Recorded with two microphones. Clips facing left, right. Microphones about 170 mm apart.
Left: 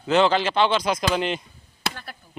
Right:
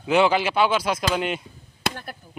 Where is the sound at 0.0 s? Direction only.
10° right (ahead or behind).